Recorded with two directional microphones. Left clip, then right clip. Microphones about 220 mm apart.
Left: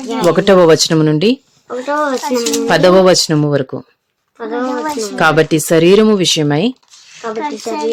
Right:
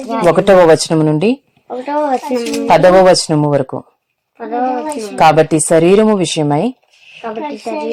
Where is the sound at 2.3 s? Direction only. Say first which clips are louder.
Right 2 dB; 15° left (ahead or behind).